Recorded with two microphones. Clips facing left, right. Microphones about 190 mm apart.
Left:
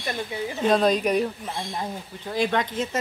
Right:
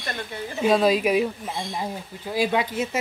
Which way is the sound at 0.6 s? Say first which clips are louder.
Right 1 dB; 5° right (ahead or behind).